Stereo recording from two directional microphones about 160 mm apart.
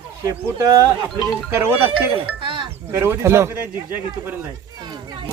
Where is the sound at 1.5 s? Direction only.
15° right (ahead or behind).